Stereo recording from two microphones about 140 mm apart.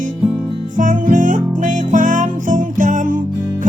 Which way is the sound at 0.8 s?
65° right (ahead or behind).